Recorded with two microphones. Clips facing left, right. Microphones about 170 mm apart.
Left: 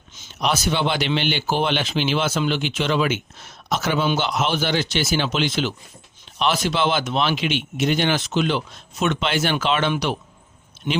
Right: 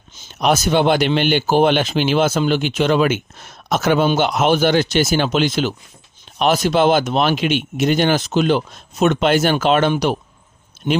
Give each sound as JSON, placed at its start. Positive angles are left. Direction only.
{"t": 0.3, "sound": "speech", "side_deg": -50}
{"t": 10.8, "sound": "speech", "side_deg": -30}